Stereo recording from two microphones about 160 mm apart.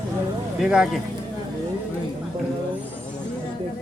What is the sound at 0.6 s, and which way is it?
Speech, 5° right (ahead or behind).